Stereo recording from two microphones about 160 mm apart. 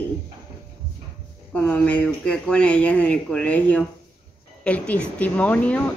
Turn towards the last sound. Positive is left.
turn(degrees=10)  # may be behind; listen again after turning